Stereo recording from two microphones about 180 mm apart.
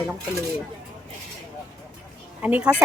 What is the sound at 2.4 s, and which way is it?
Speech, 10° right (ahead or behind).